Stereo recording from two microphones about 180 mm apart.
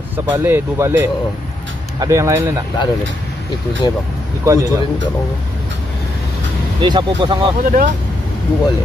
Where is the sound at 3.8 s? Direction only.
25° left (ahead or behind).